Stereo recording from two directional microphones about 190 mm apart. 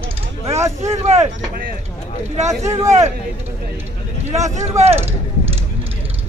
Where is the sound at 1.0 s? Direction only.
35° right (ahead or behind).